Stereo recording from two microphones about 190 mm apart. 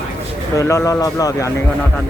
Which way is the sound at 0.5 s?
15° left (ahead or behind).